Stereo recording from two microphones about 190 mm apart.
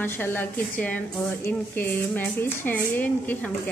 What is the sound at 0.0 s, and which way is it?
A woman's voice, 10° left (ahead or behind).